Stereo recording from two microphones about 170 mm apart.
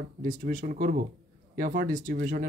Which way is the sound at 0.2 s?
50° right (ahead or behind).